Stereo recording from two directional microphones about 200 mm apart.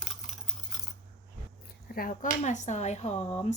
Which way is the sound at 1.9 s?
45° left (ahead or behind).